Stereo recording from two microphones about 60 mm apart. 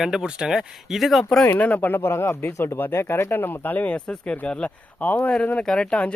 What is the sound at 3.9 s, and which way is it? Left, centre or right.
Speech, centre.